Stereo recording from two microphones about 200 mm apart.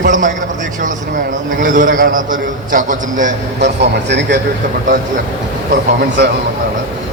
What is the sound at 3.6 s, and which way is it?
Speech, 60° right (ahead or behind).